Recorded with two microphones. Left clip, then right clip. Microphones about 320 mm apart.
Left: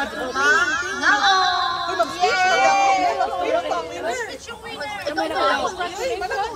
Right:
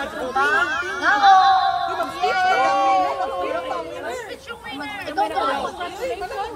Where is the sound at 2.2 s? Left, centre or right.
Left.